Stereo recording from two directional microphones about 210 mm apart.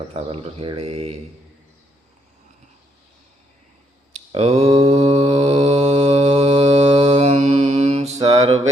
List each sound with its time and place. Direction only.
0.1 s mantra: 30° right (ahead or behind)
4.3 s mantra: 30° right (ahead or behind)
8.2 s mantra: 15° right (ahead or behind)